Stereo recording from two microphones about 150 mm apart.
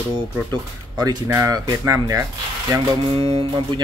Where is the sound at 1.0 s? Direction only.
20° right (ahead or behind).